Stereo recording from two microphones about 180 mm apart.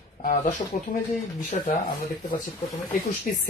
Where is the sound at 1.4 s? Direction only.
40° left (ahead or behind).